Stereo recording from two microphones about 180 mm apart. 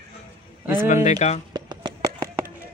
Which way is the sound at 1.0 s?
35° left (ahead or behind).